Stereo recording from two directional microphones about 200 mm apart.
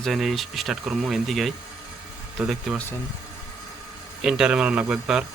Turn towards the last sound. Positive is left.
turn(degrees=-5)  # may be behind; listen again after turning